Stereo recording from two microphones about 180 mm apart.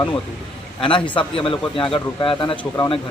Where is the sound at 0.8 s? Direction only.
30° left (ahead or behind).